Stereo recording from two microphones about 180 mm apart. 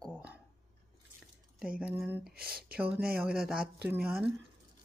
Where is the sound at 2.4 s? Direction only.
55° right (ahead or behind).